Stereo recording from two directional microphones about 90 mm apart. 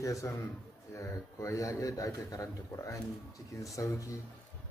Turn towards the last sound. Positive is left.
turn(degrees=35)  # may be behind; listen again after turning